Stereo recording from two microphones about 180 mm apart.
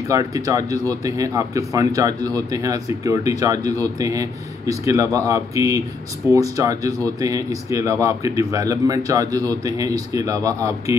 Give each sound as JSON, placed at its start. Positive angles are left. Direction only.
{"t": 0.1, "sound": "speech", "side_deg": -20}